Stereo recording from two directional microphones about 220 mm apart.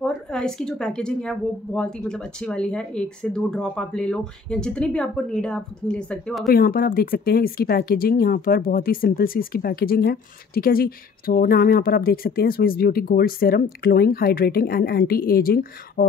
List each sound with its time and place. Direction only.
0.0 s a woman's voice: centre (ahead or behind)
6.5 s speech: 40° left (ahead or behind)